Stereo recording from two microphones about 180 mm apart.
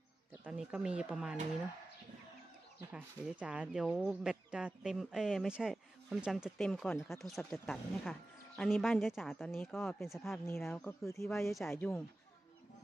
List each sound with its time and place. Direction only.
0.3 s speech: 5° right (ahead or behind)
2.9 s speech: 5° right (ahead or behind)
11.1 s speech: 15° left (ahead or behind)
11.3 s speech: centre (ahead or behind)
11.7 s speech: 15° left (ahead or behind)